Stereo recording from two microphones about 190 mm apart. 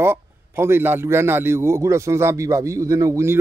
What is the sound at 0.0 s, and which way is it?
A man's voice, 10° right (ahead or behind).